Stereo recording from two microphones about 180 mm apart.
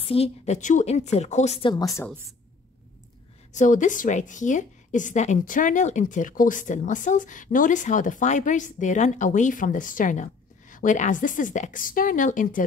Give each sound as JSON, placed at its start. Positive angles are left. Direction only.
{"t": 0.0, "sound": "a woman's voice", "side_deg": 35}
{"t": 3.5, "sound": "a woman's voice", "side_deg": 45}